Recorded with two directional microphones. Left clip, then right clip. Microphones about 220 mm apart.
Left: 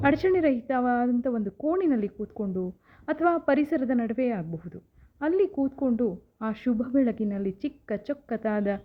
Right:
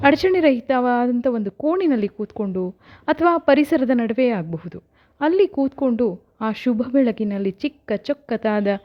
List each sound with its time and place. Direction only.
0.0 s a woman's voice: 40° right (ahead or behind)